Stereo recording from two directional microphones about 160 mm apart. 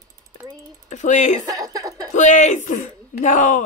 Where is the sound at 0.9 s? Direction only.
50° left (ahead or behind).